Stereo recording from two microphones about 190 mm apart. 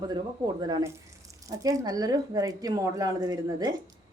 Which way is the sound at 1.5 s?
20° right (ahead or behind).